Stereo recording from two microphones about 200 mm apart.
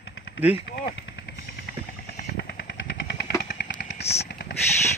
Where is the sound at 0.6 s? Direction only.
60° left (ahead or behind).